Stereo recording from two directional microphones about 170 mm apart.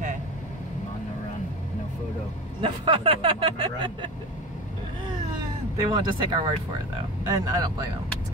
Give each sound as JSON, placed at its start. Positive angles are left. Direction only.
{"t": 2.6, "sound": "speech", "side_deg": -30}
{"t": 5.9, "sound": "speech", "side_deg": -30}